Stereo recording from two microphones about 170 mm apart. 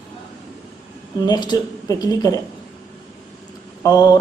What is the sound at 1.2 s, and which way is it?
A man's voice, 25° left (ahead or behind).